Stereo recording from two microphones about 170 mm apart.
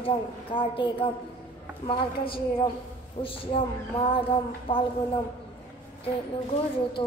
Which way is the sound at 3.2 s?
30° left (ahead or behind).